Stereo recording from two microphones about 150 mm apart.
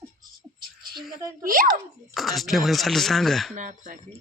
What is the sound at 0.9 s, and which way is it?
Speech, 25° right (ahead or behind).